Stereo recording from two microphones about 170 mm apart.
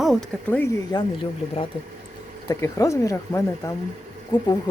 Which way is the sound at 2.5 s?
20° left (ahead or behind).